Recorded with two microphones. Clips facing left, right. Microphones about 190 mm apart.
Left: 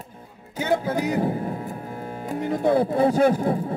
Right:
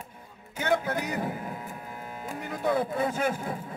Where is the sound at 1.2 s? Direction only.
35° left (ahead or behind).